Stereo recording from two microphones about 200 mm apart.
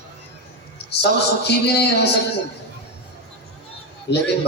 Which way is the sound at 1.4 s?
55° left (ahead or behind).